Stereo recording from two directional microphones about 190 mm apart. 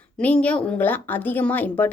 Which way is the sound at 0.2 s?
5° left (ahead or behind).